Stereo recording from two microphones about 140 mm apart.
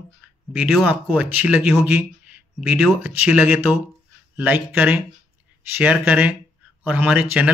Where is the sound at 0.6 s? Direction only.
5° right (ahead or behind).